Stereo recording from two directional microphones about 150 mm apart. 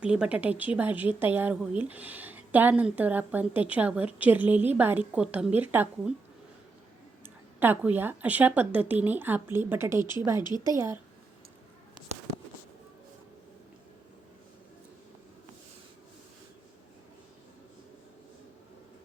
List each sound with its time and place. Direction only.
0.0 s a woman's voice: 5° right (ahead or behind)
7.2 s a woman's voice: 10° right (ahead or behind)
10.4 s a woman's voice: 30° left (ahead or behind)
10.7 s speech: 20° right (ahead or behind)